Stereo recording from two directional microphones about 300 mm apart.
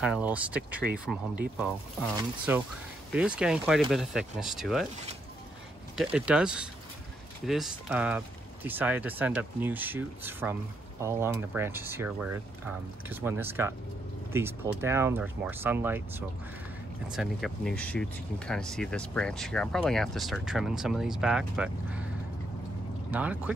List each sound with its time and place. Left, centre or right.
0.0 s speech: centre
5.9 s speech: centre
23.1 s speech: centre